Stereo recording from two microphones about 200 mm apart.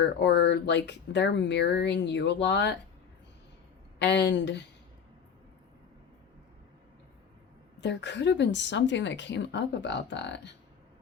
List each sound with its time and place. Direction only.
0.0 s a woman's voice: 60° left (ahead or behind)
3.9 s a woman's voice: 60° left (ahead or behind)
7.8 s a woman's voice: 60° left (ahead or behind)